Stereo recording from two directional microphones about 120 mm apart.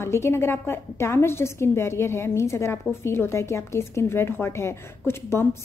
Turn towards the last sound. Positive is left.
turn(degrees=20)  # may be behind; listen again after turning